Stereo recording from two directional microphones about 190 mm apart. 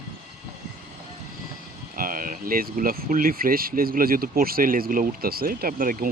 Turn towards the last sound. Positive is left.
turn(degrees=-45)  # may be behind; listen again after turning